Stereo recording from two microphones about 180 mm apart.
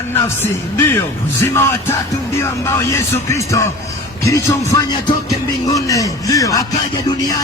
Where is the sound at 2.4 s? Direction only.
15° left (ahead or behind).